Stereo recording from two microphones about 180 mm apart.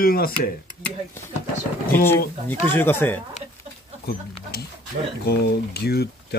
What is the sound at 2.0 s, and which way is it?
Speech, 10° left (ahead or behind).